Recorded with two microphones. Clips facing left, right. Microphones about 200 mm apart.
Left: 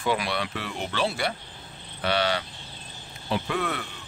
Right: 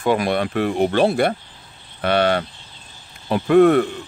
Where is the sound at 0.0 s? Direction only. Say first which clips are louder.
Right 8 dB; 50° right (ahead or behind).